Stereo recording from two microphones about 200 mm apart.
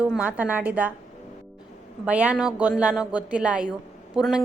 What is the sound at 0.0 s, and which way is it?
Speech, 5° right (ahead or behind).